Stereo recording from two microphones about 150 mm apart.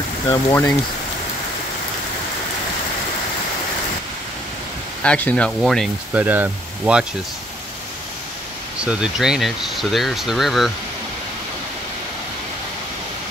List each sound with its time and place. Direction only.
0.3 s speech: 15° left (ahead or behind)
5.0 s speech: 10° left (ahead or behind)
6.1 s speech: 10° right (ahead or behind)
8.8 s speech: 5° right (ahead or behind)